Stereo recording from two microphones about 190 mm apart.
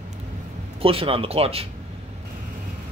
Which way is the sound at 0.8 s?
30° right (ahead or behind).